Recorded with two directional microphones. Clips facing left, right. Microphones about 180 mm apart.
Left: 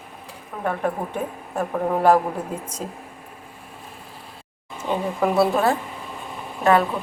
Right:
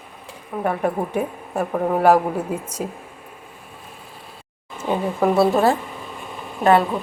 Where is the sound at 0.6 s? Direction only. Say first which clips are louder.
Right 3 dB; 10° right (ahead or behind).